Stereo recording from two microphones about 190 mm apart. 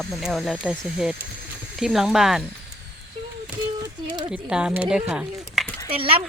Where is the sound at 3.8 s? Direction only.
25° right (ahead or behind).